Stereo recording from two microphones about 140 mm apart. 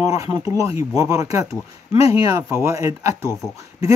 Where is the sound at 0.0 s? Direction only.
25° right (ahead or behind).